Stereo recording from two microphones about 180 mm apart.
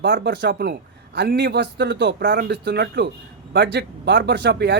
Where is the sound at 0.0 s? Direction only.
75° right (ahead or behind).